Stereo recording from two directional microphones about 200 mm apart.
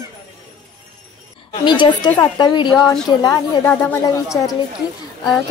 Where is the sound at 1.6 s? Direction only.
25° left (ahead or behind).